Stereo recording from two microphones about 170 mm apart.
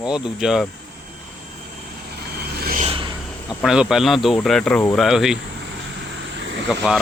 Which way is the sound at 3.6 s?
5° right (ahead or behind).